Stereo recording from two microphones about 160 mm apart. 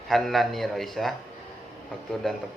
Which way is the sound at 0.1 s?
Centre (ahead or behind).